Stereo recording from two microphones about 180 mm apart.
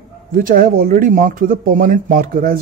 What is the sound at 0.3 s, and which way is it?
Speech, 50° right (ahead or behind).